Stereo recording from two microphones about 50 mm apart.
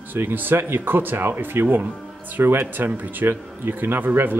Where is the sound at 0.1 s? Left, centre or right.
Right.